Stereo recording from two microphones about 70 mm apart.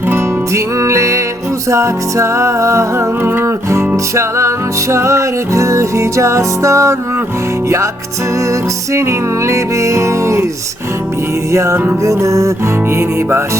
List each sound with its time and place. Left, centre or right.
0.5 s music: right
8.9 s music: right
11.5 s music: right